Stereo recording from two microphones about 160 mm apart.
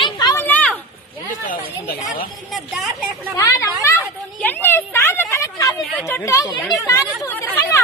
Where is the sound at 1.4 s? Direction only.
65° left (ahead or behind).